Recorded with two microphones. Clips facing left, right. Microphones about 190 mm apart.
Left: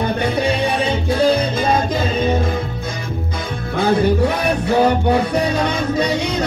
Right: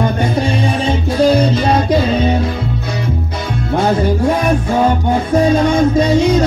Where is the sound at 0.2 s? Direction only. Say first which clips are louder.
Right 2 dB; 60° left (ahead or behind).